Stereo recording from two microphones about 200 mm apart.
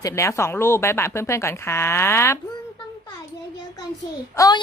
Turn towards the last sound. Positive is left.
turn(degrees=15)  # may be behind; listen again after turning